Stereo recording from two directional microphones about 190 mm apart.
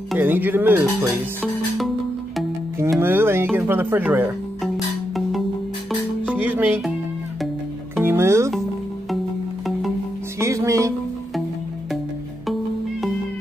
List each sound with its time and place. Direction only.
0.1 s speech: 10° right (ahead or behind)
3.0 s speech: 10° right (ahead or behind)
5.9 s music: 5° right (ahead or behind)
7.9 s music: 10° right (ahead or behind)
10.4 s music: 15° right (ahead or behind)